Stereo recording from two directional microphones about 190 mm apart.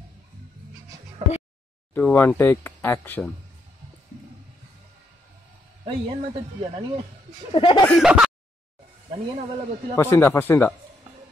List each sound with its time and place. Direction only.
1.2 s a sound: 40° right (ahead or behind)
2.0 s speech: 10° left (ahead or behind)
5.9 s speech: 30° right (ahead or behind)
7.5 s speech: 25° left (ahead or behind)
7.8 s a sound: centre (ahead or behind)
9.9 s speech: 15° left (ahead or behind)